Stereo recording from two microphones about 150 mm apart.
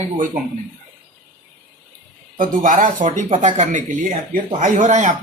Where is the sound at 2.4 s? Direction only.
60° right (ahead or behind).